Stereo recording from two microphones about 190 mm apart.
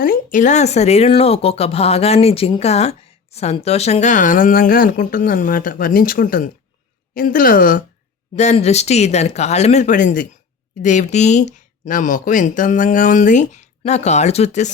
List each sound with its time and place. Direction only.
0.0 s speech: 45° left (ahead or behind)
8.4 s speech: 35° left (ahead or behind)